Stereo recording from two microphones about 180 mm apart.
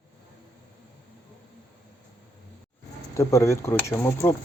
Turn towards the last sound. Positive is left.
turn(degrees=15)  # may be behind; listen again after turning